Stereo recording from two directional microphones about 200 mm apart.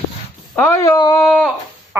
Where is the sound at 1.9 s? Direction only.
15° right (ahead or behind).